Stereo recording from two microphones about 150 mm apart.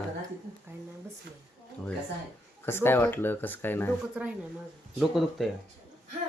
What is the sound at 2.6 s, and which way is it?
Speech, 15° left (ahead or behind).